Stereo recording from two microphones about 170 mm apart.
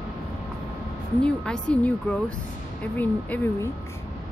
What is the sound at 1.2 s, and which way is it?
Speech, 5° left (ahead or behind).